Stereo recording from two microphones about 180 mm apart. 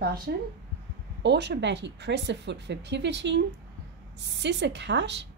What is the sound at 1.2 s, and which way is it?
A woman's voice, 70° right (ahead or behind).